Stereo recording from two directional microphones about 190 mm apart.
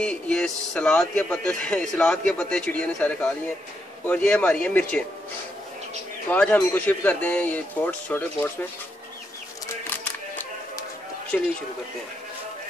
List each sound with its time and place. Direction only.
0.0 s a man's voice: 5° left (ahead or behind)
6.3 s a man's voice: 10° left (ahead or behind)
9.8 s music: 10° left (ahead or behind)
11.3 s a man's voice: 5° left (ahead or behind)